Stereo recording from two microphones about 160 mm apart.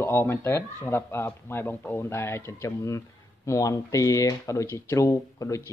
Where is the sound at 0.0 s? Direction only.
15° left (ahead or behind).